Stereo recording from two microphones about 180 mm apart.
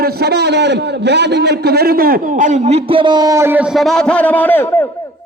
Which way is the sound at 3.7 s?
Centre (ahead or behind).